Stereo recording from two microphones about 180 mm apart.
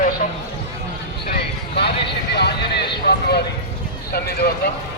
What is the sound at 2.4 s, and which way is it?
Speech, 70° left (ahead or behind).